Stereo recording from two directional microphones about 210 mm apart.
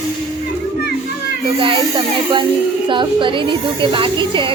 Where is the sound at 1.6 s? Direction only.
25° right (ahead or behind).